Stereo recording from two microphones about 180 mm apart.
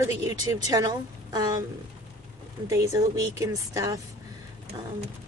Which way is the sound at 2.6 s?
15° right (ahead or behind).